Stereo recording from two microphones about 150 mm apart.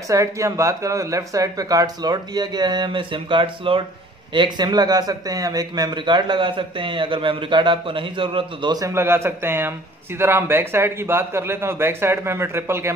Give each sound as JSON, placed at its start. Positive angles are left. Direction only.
{"t": 0.1, "sound": "a man's voice", "side_deg": -20}